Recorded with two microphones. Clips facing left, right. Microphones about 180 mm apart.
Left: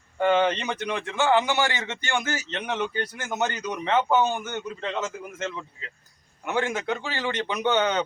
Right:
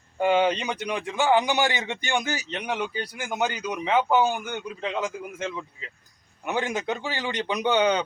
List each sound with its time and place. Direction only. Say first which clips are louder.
0.2 s a man's voice: even; 10° right (ahead or behind)